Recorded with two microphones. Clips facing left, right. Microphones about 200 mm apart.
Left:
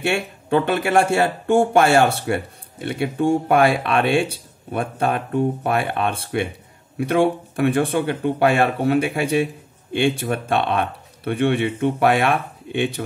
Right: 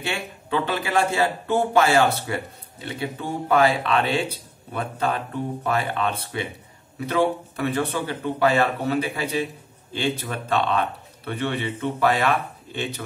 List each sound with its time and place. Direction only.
0.0 s speech: 55° left (ahead or behind)
10.0 s speech: 50° left (ahead or behind)